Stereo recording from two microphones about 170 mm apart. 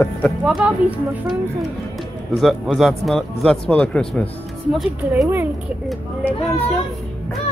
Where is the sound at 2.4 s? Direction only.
Centre (ahead or behind).